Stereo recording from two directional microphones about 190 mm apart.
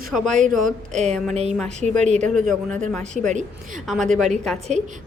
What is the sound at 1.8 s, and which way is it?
Speech, 40° right (ahead or behind).